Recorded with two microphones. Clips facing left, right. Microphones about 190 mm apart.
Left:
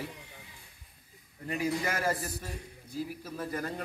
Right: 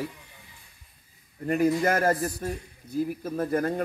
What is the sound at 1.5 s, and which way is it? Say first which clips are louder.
A man's voice: right 9 dB; 55° right (ahead or behind).